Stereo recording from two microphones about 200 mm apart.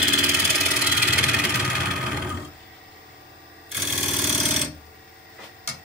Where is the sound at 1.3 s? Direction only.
Centre (ahead or behind).